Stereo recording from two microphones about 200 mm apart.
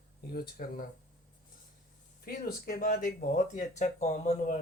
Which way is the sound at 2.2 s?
50° left (ahead or behind).